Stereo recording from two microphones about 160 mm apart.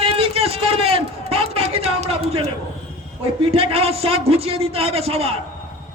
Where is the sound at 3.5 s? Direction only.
35° right (ahead or behind).